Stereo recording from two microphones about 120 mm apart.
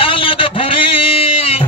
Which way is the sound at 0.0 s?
45° left (ahead or behind).